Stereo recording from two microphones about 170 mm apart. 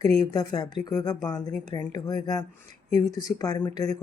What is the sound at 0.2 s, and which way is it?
Speech, 25° left (ahead or behind).